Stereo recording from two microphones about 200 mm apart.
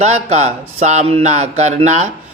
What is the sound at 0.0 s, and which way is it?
A man's voice, 35° right (ahead or behind).